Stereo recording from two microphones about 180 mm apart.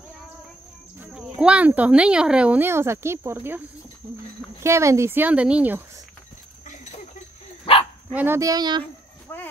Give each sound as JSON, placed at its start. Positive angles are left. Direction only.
{"t": 1.1, "sound": "speech", "side_deg": -5}
{"t": 4.6, "sound": "speech", "side_deg": -15}
{"t": 8.1, "sound": "speech", "side_deg": -10}
{"t": 9.3, "sound": "a sound", "side_deg": 10}